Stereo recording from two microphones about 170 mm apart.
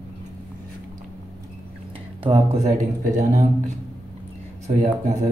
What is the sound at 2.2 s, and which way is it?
Speech, 35° right (ahead or behind).